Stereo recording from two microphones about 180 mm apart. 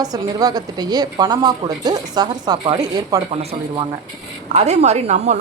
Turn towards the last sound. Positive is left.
turn(degrees=-40)  # may be behind; listen again after turning